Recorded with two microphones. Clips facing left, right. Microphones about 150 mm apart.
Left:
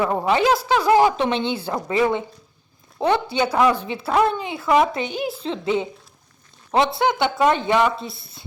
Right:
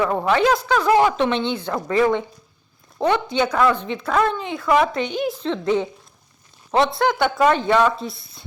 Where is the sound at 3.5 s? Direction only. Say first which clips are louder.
Left 3 dB; 10° left (ahead or behind).